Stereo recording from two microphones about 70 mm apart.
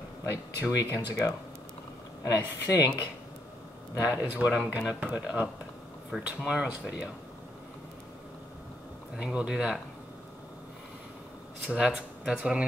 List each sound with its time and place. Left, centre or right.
0.2 s speech: left
2.3 s speech: left
4.0 s speech: centre
9.1 s speech: centre
11.6 s speech: centre